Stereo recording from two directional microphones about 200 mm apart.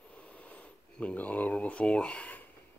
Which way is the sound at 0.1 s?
5° left (ahead or behind).